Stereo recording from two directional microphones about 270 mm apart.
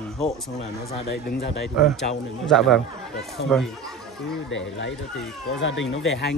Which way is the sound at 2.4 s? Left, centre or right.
Centre.